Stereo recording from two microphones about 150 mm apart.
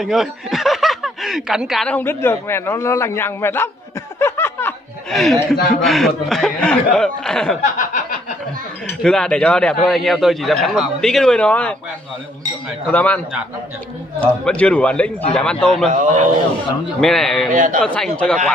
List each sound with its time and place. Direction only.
0.0 s speech: centre (ahead or behind)
2.0 s a man's voice: 15° left (ahead or behind)
4.2 s snicker: 15° left (ahead or behind)
5.1 s a man's voice: centre (ahead or behind)
7.6 s a sound: 55° left (ahead or behind)
8.8 s a man's voice: 5° left (ahead or behind)
12.9 s a man's voice: 10° left (ahead or behind)
14.2 s a man's voice: 10° left (ahead or behind)
15.9 s a man's voice: 55° right (ahead or behind)
17.0 s a man's voice: 5° left (ahead or behind)
17.5 s a man's voice: 55° right (ahead or behind)
17.8 s a man's voice: 5° left (ahead or behind)